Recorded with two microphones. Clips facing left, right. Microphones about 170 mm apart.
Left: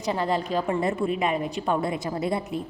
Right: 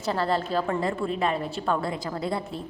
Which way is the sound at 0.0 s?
15° left (ahead or behind).